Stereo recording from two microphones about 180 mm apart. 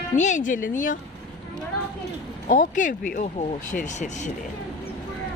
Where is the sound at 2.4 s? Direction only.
45° left (ahead or behind).